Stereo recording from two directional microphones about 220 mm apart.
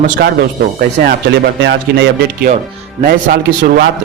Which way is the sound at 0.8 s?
40° right (ahead or behind).